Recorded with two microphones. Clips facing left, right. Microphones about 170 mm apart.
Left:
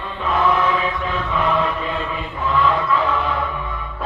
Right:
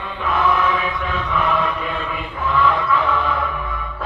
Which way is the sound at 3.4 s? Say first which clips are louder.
Right 1 dB; 20° left (ahead or behind).